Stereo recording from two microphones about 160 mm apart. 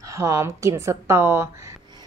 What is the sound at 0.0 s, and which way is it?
Speech, 20° right (ahead or behind).